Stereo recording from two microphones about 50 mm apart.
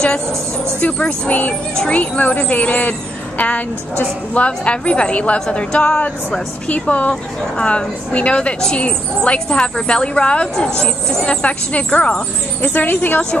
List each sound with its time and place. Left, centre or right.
0.7 s a woman's voice: left
12.6 s a woman's voice: left